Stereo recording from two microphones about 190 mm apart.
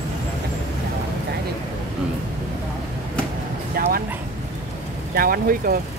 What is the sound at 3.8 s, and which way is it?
Bow-wow, 50° right (ahead or behind).